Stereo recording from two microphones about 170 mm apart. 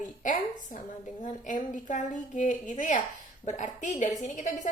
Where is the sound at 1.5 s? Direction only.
50° left (ahead or behind).